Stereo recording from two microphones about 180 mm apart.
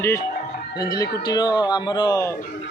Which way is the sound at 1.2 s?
20° left (ahead or behind).